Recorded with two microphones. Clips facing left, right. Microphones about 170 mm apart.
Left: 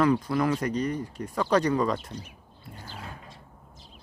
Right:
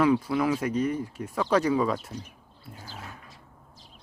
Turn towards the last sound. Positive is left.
turn(degrees=-5)  # may be behind; listen again after turning